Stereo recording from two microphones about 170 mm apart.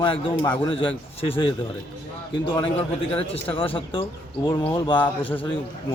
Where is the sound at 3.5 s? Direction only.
30° left (ahead or behind).